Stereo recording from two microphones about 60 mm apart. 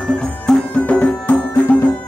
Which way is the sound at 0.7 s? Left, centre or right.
Left.